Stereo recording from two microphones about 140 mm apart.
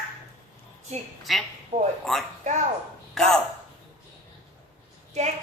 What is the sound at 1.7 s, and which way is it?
Speech, 50° right (ahead or behind).